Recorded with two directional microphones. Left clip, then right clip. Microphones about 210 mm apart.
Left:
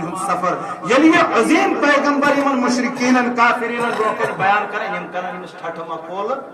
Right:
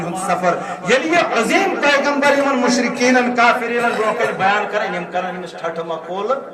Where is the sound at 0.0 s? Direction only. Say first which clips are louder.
Right 2 dB; 50° right (ahead or behind).